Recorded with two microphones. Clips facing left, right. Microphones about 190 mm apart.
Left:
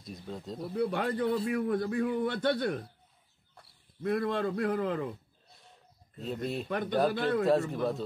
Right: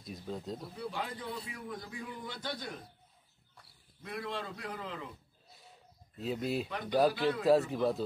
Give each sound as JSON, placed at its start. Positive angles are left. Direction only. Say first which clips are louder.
{"t": 0.0, "sound": "speech", "louder": "even", "side_deg": 0}
{"t": 0.6, "sound": "a man's voice", "louder": "left 9 dB", "side_deg": 60}
{"t": 4.0, "sound": "a man's voice", "louder": "left 10 dB", "side_deg": 55}
{"t": 5.5, "sound": "bird", "louder": "right 1 dB", "side_deg": -5}
{"t": 6.2, "sound": "speech", "louder": "even", "side_deg": 0}
{"t": 7.2, "sound": "a man's voice", "louder": "left 3 dB", "side_deg": 55}
{"t": 7.4, "sound": "speech", "louder": "even", "side_deg": 0}